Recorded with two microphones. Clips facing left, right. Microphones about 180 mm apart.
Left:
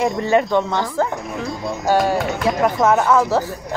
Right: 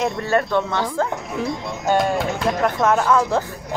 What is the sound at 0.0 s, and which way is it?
A woman's voice, 15° left (ahead or behind).